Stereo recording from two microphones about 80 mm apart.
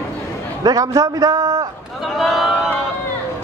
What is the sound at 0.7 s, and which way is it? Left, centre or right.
A man's voice, right.